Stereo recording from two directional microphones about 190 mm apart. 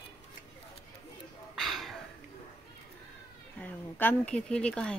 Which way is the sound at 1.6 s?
Centre (ahead or behind).